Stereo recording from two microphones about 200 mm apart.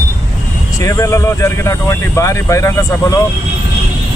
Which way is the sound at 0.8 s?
15° left (ahead or behind).